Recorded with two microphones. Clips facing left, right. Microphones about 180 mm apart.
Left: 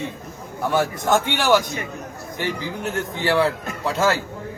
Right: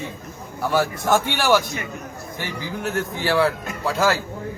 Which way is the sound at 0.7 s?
20° left (ahead or behind).